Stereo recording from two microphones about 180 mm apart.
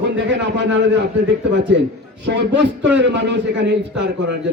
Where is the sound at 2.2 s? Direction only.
75° right (ahead or behind).